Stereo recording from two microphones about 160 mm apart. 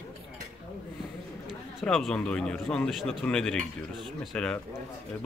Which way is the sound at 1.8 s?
5° left (ahead or behind).